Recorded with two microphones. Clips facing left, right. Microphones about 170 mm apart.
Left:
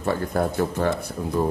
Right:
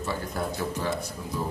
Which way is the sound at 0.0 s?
55° left (ahead or behind).